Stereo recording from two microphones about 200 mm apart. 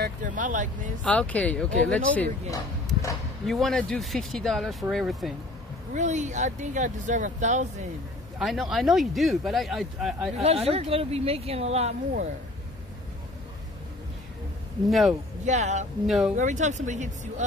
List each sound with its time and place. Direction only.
0.0 s speech: 40° right (ahead or behind)
1.0 s speech: 5° left (ahead or behind)
3.4 s speech: centre (ahead or behind)
5.9 s speech: 35° right (ahead or behind)
8.4 s speech: centre (ahead or behind)
10.4 s speech: 30° right (ahead or behind)
14.9 s speech: centre (ahead or behind)
15.4 s speech: 35° right (ahead or behind)
16.1 s speech: centre (ahead or behind)
16.3 s speech: 40° right (ahead or behind)